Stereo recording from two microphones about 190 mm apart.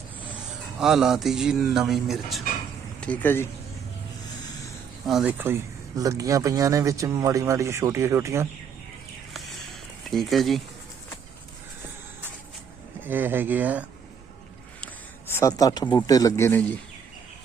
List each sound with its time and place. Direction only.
0.8 s a man's voice: 5° right (ahead or behind)
5.0 s a man's voice: 5° right (ahead or behind)
10.1 s a man's voice: centre (ahead or behind)
13.1 s speech: 10° right (ahead or behind)
15.3 s a man's voice: 15° left (ahead or behind)